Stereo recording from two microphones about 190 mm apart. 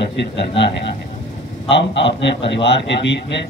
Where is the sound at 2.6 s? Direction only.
70° left (ahead or behind).